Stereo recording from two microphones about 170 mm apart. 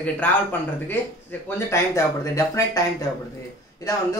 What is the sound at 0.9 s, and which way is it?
Speech, 10° left (ahead or behind).